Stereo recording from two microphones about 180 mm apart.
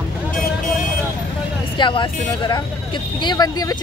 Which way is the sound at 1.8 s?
25° left (ahead or behind).